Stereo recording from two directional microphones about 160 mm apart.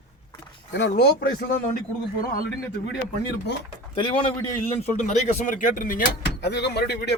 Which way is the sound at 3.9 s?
35° left (ahead or behind).